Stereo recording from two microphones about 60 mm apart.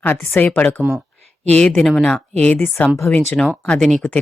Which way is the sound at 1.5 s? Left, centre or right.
Centre.